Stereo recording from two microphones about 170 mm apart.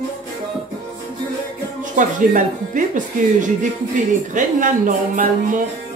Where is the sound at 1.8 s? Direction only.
50° right (ahead or behind).